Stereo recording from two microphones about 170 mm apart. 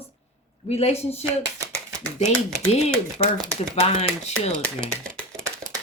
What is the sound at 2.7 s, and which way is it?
Speech, 40° left (ahead or behind).